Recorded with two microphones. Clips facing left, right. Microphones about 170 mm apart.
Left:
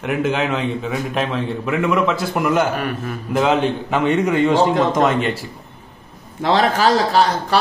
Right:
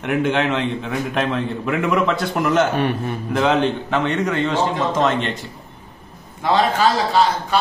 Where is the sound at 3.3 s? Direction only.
5° left (ahead or behind).